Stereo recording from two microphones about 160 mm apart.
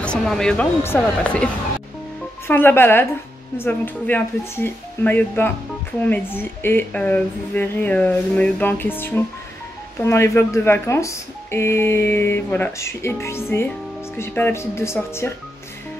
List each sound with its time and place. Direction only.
0.0 s speech: 5° left (ahead or behind)